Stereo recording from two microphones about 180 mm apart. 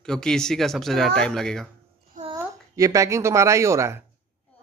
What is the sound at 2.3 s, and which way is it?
A woman's voice, 20° right (ahead or behind).